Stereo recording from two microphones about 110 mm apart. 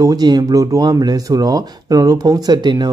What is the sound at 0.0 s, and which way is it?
Speech, 35° right (ahead or behind).